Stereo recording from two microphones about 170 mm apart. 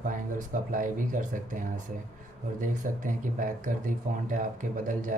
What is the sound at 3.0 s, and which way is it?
Speech, 50° right (ahead or behind).